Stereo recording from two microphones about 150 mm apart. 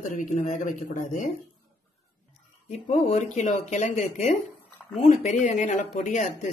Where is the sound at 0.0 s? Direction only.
60° left (ahead or behind).